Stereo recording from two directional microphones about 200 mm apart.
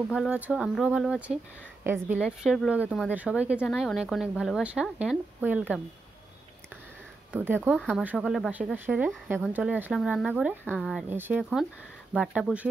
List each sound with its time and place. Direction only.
0.1 s a woman's voice: 5° right (ahead or behind)
7.3 s a woman's voice: 10° right (ahead or behind)